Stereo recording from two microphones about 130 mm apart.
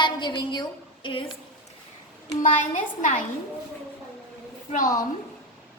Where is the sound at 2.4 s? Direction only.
70° left (ahead or behind).